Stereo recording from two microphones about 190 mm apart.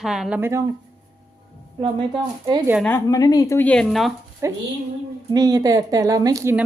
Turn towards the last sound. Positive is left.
turn(degrees=-15)  # may be behind; listen again after turning